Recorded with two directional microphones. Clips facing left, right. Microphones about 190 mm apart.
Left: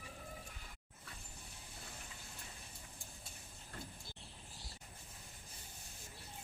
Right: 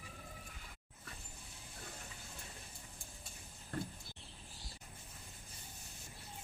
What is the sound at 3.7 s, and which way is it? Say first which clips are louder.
Vehicle: right 9 dB; 50° right (ahead or behind).